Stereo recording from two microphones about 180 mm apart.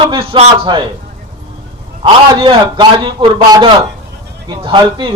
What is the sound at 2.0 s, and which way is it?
A man's voice, 30° right (ahead or behind).